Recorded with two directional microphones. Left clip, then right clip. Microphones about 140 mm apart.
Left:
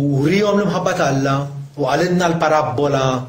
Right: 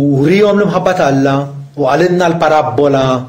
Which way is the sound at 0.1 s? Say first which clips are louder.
Right 6 dB; 35° right (ahead or behind).